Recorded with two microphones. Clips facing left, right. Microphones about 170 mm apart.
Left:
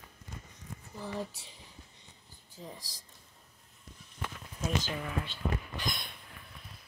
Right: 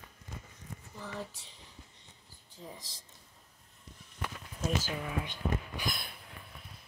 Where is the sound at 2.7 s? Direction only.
20° right (ahead or behind).